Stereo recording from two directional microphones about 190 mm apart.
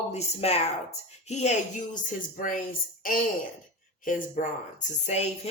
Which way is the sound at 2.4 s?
50° left (ahead or behind).